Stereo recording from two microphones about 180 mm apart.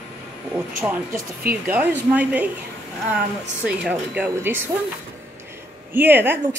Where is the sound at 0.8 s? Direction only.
10° right (ahead or behind).